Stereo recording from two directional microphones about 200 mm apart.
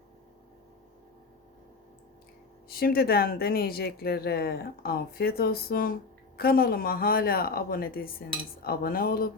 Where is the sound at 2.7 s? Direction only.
50° left (ahead or behind).